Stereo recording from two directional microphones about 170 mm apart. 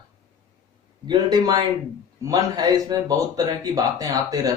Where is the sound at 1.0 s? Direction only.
25° right (ahead or behind).